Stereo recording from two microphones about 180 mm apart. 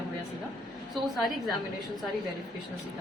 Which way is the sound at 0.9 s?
Centre (ahead or behind).